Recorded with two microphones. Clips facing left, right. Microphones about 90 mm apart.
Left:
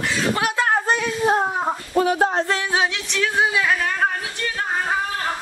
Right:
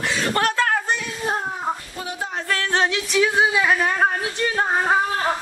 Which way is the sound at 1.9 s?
60° left (ahead or behind).